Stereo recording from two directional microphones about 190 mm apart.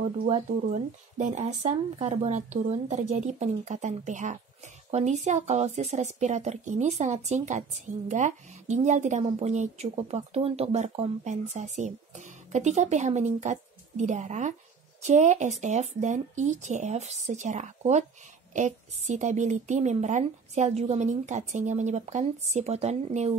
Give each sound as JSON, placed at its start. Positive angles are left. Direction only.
{"t": 0.3, "sound": "speech", "side_deg": -40}